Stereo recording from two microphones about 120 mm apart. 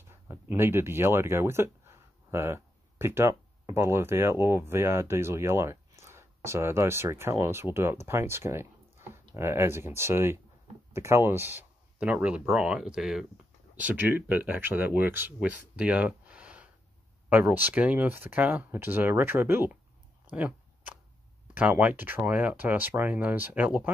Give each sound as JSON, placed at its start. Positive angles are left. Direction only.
{"t": 0.1, "sound": "speech", "side_deg": -20}
{"t": 13.7, "sound": "speech", "side_deg": -15}
{"t": 20.2, "sound": "a sound", "side_deg": -10}
{"t": 21.5, "sound": "speech", "side_deg": -15}